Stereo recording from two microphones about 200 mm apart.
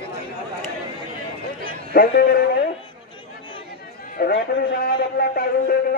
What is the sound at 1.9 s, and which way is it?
Speech, 50° left (ahead or behind).